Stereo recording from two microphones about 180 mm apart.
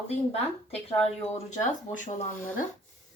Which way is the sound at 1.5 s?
40° left (ahead or behind).